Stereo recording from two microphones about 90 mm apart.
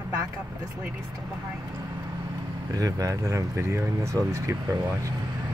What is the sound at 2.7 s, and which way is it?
Speech, 40° right (ahead or behind).